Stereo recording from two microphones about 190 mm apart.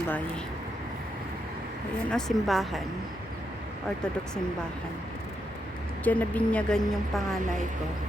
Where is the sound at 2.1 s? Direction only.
Centre (ahead or behind).